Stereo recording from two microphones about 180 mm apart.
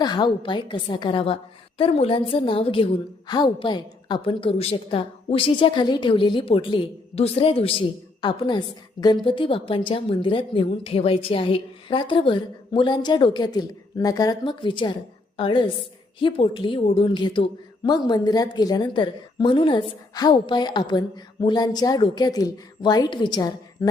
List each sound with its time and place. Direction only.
0.0 s a woman's voice: 25° left (ahead or behind)